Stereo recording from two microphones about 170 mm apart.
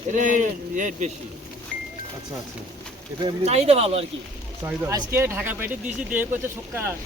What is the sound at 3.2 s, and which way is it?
Speech, 40° right (ahead or behind).